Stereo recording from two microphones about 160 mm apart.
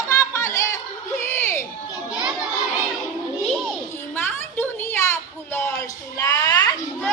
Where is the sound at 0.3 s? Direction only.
20° left (ahead or behind).